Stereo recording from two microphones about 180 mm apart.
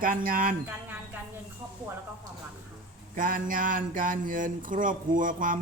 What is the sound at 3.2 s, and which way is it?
Speech, 50° right (ahead or behind).